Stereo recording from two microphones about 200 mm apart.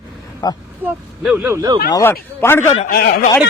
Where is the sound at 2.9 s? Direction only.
45° left (ahead or behind).